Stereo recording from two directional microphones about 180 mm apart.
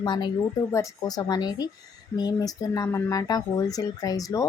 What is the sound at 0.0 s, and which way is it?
A woman's voice, 25° left (ahead or behind).